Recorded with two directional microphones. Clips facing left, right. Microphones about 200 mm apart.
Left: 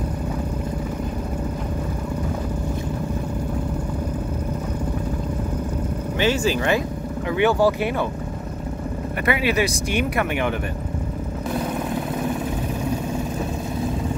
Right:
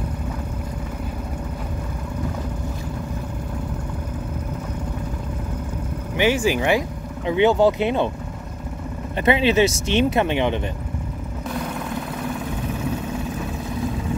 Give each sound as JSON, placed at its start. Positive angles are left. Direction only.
{"t": 6.1, "sound": "speech", "side_deg": -15}
{"t": 9.2, "sound": "speech", "side_deg": -25}